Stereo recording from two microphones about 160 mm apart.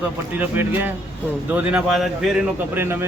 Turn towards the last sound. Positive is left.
turn(degrees=-15)  # may be behind; listen again after turning